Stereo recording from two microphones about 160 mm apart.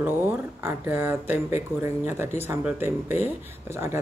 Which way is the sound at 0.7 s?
15° right (ahead or behind).